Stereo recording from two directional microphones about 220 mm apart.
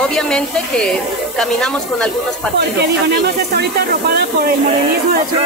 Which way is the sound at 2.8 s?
50° right (ahead or behind).